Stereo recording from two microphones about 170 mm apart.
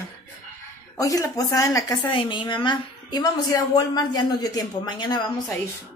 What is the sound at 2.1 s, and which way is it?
A woman's voice, 30° left (ahead or behind).